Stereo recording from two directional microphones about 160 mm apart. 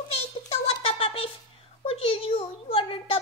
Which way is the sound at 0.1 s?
40° left (ahead or behind).